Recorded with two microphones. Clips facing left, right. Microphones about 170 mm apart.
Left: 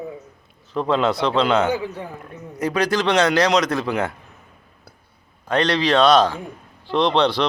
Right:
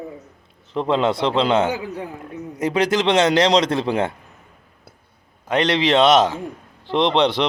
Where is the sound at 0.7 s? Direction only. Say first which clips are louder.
Right 1 dB; 20° right (ahead or behind).